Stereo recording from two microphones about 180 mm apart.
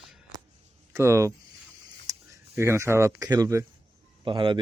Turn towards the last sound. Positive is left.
turn(degrees=-25)  # may be behind; listen again after turning